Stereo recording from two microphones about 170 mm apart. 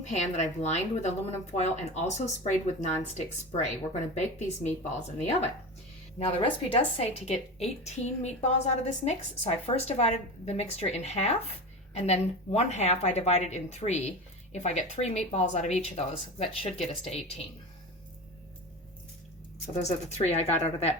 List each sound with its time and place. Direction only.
0.6 s a woman's voice: 40° left (ahead or behind)
6.1 s a woman's voice: 30° left (ahead or behind)
19.8 s a woman's voice: 40° left (ahead or behind)